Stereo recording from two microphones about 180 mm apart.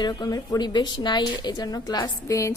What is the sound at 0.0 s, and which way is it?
A woman's voice, 20° left (ahead or behind).